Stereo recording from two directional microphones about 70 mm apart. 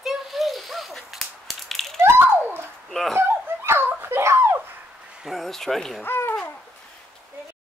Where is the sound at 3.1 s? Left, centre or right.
Right.